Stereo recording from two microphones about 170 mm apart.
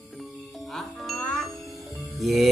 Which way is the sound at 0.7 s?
Centre (ahead or behind).